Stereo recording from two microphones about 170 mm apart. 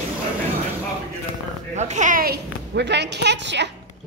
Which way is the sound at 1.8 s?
45° right (ahead or behind).